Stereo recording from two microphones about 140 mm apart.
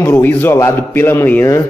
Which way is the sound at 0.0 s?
15° left (ahead or behind).